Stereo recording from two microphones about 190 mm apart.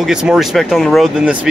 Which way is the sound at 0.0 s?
5° right (ahead or behind).